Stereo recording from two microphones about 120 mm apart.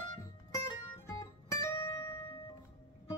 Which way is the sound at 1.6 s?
25° left (ahead or behind).